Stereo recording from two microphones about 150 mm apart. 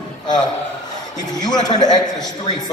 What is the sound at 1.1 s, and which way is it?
A man's voice, 25° left (ahead or behind).